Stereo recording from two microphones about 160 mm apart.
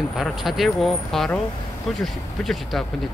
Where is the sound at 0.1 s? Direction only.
Centre (ahead or behind).